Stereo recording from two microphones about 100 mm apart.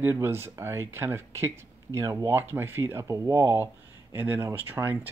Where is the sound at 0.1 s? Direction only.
25° right (ahead or behind).